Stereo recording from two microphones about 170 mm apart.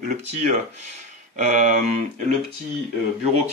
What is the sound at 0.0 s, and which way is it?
A man's voice, 45° right (ahead or behind).